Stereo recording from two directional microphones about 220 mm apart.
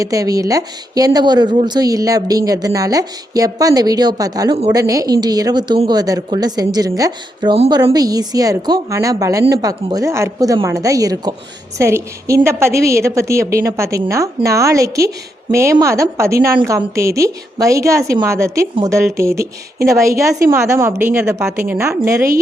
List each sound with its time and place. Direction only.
0.0 s a woman's voice: 15° right (ahead or behind)
4.8 s speech: 15° right (ahead or behind)